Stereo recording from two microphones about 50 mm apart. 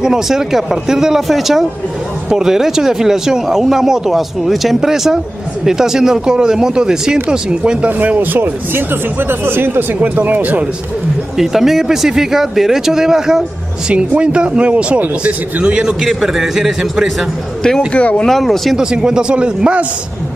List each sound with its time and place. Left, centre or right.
0.0 s speech: centre
8.0 s speech: right
11.3 s speech: centre
13.8 s speech: right
15.8 s a man's voice: centre
17.9 s speech: left
18.2 s a man's voice: centre
18.8 s speech: centre